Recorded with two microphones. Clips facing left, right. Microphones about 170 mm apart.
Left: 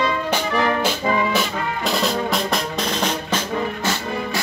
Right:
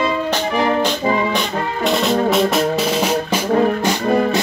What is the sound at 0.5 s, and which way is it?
Music, 20° right (ahead or behind).